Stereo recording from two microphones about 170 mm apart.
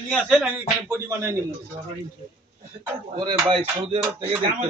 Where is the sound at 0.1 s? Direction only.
Centre (ahead or behind).